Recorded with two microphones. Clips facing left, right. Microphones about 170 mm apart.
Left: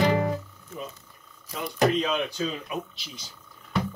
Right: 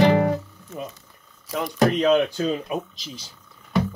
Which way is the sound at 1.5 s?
90° right.